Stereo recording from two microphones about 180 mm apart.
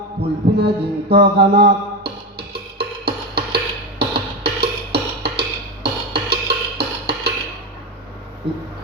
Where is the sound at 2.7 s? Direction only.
60° right (ahead or behind).